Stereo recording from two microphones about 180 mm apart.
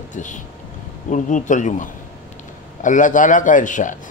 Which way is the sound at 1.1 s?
45° left (ahead or behind).